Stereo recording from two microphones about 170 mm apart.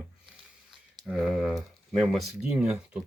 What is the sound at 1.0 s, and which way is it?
Speech, 5° right (ahead or behind).